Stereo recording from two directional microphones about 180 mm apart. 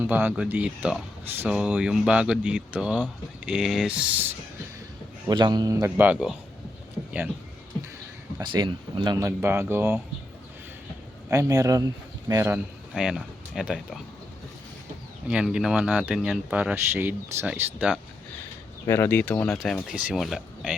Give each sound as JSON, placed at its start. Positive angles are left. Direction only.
{"t": 0.0, "sound": "speech", "side_deg": -10}
{"t": 5.3, "sound": "speech", "side_deg": -25}
{"t": 8.4, "sound": "speech", "side_deg": -25}
{"t": 11.3, "sound": "a man's voice", "side_deg": -20}
{"t": 12.9, "sound": "speech", "side_deg": 0}
{"t": 15.3, "sound": "speech", "side_deg": -5}
{"t": 18.9, "sound": "speech", "side_deg": 15}